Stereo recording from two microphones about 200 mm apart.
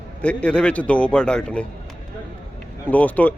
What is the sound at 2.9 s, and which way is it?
Speech, 5° left (ahead or behind).